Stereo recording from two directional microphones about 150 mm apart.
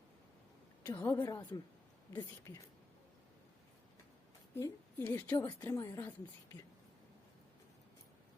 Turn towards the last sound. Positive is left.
turn(degrees=20)  # may be behind; listen again after turning